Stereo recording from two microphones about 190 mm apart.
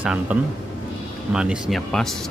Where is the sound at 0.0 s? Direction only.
5° right (ahead or behind).